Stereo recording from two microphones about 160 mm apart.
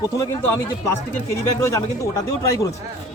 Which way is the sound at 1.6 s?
20° left (ahead or behind).